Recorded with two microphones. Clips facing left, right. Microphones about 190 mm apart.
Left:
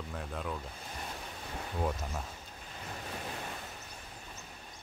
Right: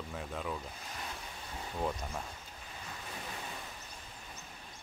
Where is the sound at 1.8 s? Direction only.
5° left (ahead or behind).